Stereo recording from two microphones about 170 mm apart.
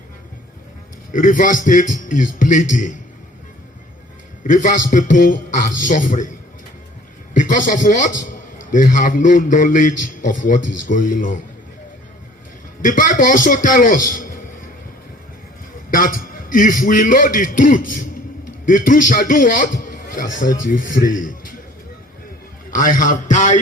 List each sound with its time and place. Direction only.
1.1 s a man's voice: 50° left (ahead or behind)
4.4 s a man's voice: 50° left (ahead or behind)
7.3 s a man's voice: 50° left (ahead or behind)
12.8 s a man's voice: 50° left (ahead or behind)
15.9 s a man's voice: 55° left (ahead or behind)
22.7 s a man's voice: 50° left (ahead or behind)